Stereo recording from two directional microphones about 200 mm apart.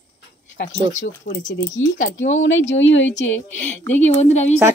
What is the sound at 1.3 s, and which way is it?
Speech, 45° left (ahead or behind).